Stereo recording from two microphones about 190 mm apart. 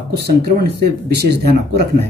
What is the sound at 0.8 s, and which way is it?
Speech, 60° right (ahead or behind).